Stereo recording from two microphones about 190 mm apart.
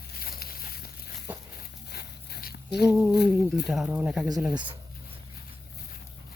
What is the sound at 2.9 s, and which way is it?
Speech, 15° right (ahead or behind).